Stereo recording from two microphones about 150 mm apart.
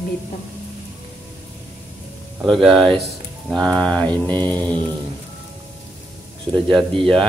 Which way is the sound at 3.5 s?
5° left (ahead or behind).